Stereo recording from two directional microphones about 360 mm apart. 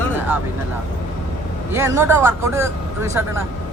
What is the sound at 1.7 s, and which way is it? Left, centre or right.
Speech, centre.